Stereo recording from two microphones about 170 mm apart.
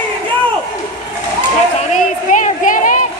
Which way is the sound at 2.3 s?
50° left (ahead or behind).